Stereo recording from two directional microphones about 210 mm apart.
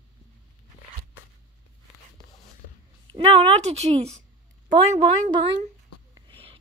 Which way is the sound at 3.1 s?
30° right (ahead or behind).